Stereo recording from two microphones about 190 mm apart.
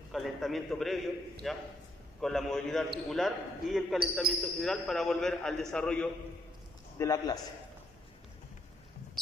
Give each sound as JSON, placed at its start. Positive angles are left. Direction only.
{"t": 0.1, "sound": "a man's voice", "side_deg": 0}
{"t": 7.0, "sound": "a man's voice", "side_deg": 15}